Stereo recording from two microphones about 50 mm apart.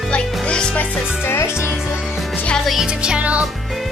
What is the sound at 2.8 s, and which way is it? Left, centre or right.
Music, centre.